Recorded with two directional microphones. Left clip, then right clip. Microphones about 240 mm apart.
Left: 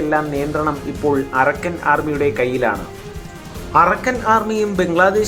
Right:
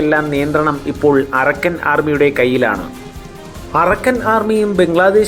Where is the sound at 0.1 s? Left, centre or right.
Centre.